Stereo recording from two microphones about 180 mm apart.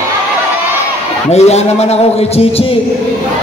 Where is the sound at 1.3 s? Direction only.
35° left (ahead or behind).